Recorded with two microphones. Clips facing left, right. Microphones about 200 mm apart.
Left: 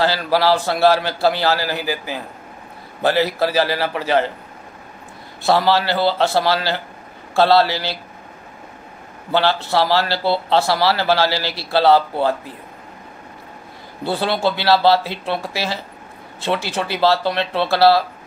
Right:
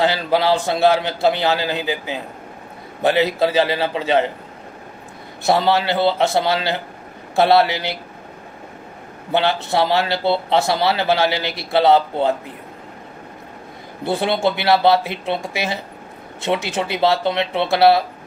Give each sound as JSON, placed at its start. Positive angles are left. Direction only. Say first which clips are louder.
{"t": 0.0, "sound": "speech", "louder": "even", "side_deg": -20}
{"t": 5.4, "sound": "speech", "louder": "even", "side_deg": -20}
{"t": 9.3, "sound": "speech", "louder": "left 1 dB", "side_deg": -20}
{"t": 14.0, "sound": "speech", "louder": "right 1 dB", "side_deg": -20}